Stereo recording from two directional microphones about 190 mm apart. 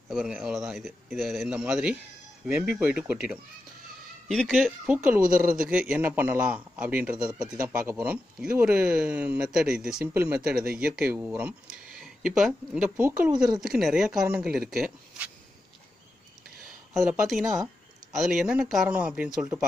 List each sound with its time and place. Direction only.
0.1 s speech: centre (ahead or behind)
5.2 s speech: 45° right (ahead or behind)
5.6 s speech: 5° right (ahead or behind)
17.0 s speech: 5° right (ahead or behind)